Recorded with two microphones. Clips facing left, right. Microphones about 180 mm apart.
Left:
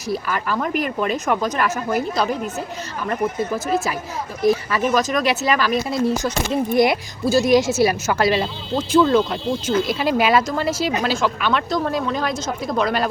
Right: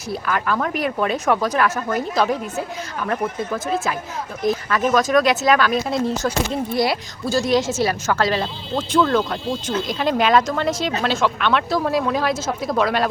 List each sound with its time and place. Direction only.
0.3 s speech: 5° left (ahead or behind)
6.7 s speech: 20° left (ahead or behind); by 13.1 s centre (ahead or behind)